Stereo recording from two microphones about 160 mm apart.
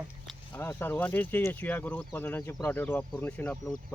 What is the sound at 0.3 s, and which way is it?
Speech, 10° left (ahead or behind).